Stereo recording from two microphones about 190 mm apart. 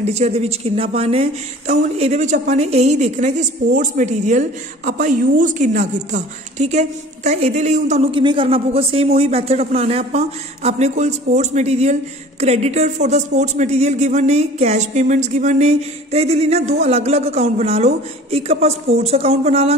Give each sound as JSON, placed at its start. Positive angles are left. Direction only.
{"t": 0.1, "sound": "a woman's voice", "side_deg": -35}